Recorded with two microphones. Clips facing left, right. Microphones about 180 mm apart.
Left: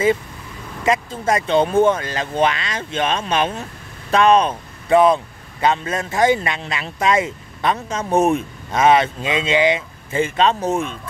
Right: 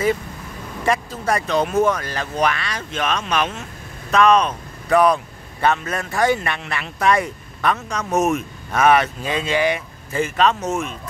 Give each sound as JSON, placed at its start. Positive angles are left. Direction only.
{"t": 0.8, "sound": "speech", "side_deg": 20}